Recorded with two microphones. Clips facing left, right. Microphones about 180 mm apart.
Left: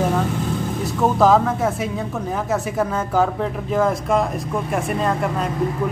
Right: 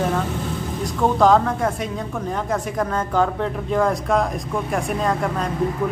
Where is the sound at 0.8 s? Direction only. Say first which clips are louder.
Even; 5° left (ahead or behind).